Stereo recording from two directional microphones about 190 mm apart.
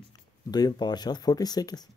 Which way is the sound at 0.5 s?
20° left (ahead or behind).